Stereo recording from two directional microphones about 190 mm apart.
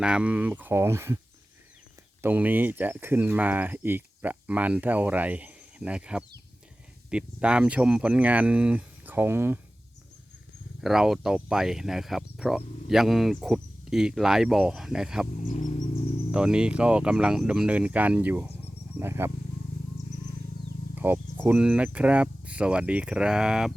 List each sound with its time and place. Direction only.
0.0 s speech: 5° right (ahead or behind)
2.2 s speech: 10° right (ahead or behind)
10.8 s speech: centre (ahead or behind)
15.4 s speech: 40° left (ahead or behind)
16.3 s speech: 5° right (ahead or behind)
20.9 s speech: 10° right (ahead or behind)